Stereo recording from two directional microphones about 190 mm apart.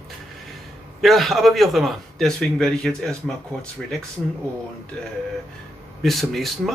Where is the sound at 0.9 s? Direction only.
Centre (ahead or behind).